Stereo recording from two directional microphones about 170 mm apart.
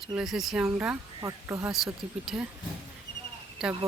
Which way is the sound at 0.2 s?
Centre (ahead or behind).